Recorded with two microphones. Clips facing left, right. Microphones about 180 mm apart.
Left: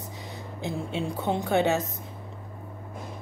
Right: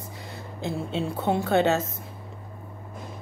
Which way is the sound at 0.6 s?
15° left (ahead or behind).